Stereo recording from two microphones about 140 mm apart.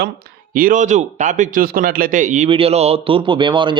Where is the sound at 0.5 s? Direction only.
75° right (ahead or behind).